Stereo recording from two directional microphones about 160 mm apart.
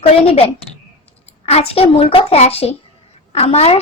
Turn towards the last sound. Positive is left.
turn(degrees=40)  # may be behind; listen again after turning